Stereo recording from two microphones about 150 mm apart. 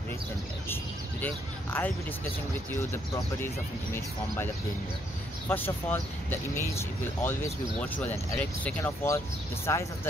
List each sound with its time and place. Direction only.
1.2 s speech: 10° left (ahead or behind)
5.5 s speech: 15° left (ahead or behind)